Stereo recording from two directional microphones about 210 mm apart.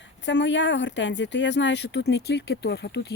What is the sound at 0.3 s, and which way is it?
Speech, 60° left (ahead or behind).